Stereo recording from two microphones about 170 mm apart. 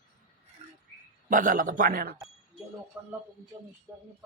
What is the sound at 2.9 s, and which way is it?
A man's voice, 15° right (ahead or behind).